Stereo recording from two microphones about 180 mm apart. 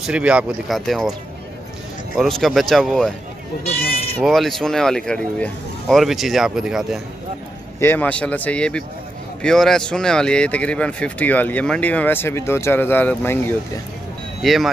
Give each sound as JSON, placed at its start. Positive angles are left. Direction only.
{"t": 0.0, "sound": "speech", "side_deg": -5}
{"t": 2.1, "sound": "speech", "side_deg": 0}
{"t": 3.6, "sound": "goat", "side_deg": 35}
{"t": 4.2, "sound": "speech", "side_deg": 0}
{"t": 7.8, "sound": "speech", "side_deg": 10}
{"t": 14.4, "sound": "speech", "side_deg": 0}